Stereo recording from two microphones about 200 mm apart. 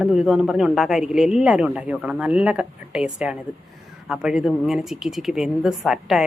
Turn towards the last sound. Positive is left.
turn(degrees=0)  # may be behind; listen again after turning